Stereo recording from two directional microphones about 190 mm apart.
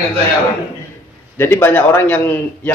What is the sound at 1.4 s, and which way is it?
A man's voice, 10° left (ahead or behind).